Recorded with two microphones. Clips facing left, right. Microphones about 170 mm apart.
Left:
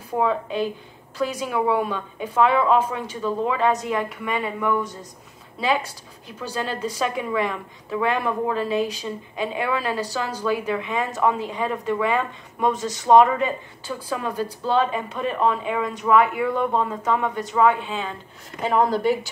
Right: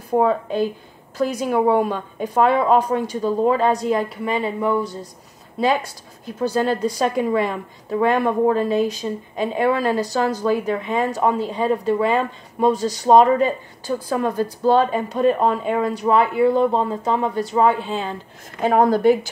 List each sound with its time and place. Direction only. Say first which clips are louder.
0.1 s a woman's voice: right 5 dB; 40° right (ahead or behind)
6.2 s a woman's voice: right 9 dB; 40° right (ahead or behind)
18.6 s speech: right 4 dB; 45° right (ahead or behind)